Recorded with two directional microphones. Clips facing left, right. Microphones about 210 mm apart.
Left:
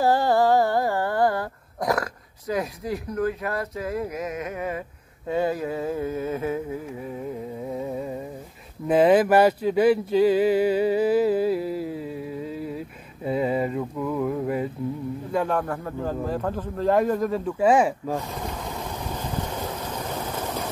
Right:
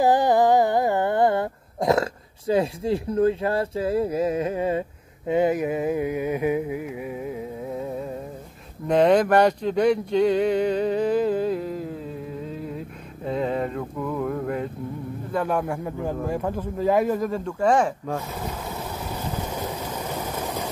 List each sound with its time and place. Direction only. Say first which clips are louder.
0.0 s humming: right 2 dB; 15° right (ahead or behind)
5.2 s a sound: right 4 dB; 20° right (ahead or behind); by 8.1 s centre (ahead or behind)
8.8 s speech: even; 5° left (ahead or behind)
15.4 s a man's voice: right 1 dB; 10° right (ahead or behind); by 18.2 s 5° left (ahead or behind)
18.3 s vehicle: even; 5° right (ahead or behind)